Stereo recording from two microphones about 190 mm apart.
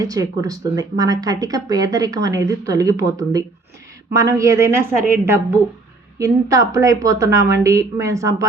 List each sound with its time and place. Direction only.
0.0 s a woman's voice: 20° right (ahead or behind)